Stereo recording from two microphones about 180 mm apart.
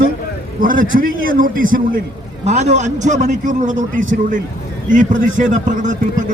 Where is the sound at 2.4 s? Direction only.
40° right (ahead or behind).